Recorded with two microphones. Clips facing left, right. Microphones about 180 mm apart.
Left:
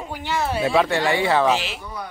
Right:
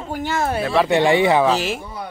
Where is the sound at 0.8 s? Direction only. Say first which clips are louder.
Right 5 dB; 20° right (ahead or behind).